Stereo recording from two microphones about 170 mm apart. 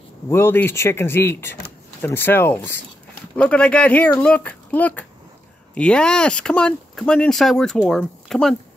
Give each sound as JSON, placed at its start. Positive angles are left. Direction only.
{"t": 0.3, "sound": "speech", "side_deg": 15}